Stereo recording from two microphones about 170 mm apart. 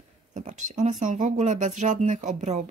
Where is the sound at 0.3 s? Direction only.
45° right (ahead or behind).